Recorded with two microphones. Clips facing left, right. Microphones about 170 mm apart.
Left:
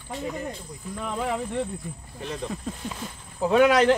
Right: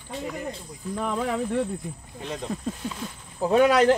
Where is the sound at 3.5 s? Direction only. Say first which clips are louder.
Even; 35° right (ahead or behind).